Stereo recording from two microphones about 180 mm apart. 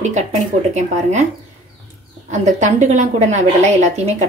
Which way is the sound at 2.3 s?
40° right (ahead or behind).